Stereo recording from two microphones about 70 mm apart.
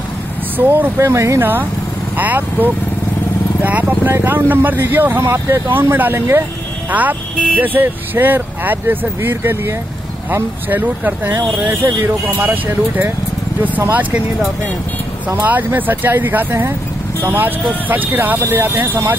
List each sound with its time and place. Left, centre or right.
0.6 s speech: right
0.9 s speech: right
1.4 s speech: right
6.9 s speech: right
15.2 s speech: right